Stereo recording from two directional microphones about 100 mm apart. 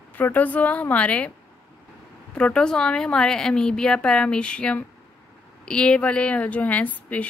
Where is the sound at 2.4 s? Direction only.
10° left (ahead or behind).